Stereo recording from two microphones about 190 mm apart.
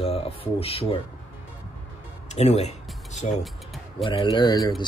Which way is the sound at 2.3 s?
35° left (ahead or behind).